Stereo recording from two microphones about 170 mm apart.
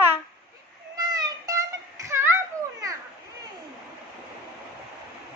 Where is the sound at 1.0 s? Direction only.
25° right (ahead or behind).